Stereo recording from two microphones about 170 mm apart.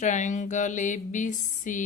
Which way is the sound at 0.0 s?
45° left (ahead or behind).